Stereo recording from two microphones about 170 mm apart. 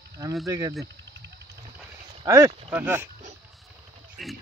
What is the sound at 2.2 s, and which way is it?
Speech, 15° right (ahead or behind).